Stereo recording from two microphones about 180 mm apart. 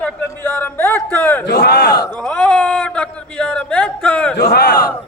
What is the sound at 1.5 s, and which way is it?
Battle cry, 65° left (ahead or behind).